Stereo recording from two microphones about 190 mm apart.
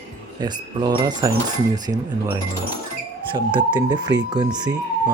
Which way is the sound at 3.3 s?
25° right (ahead or behind).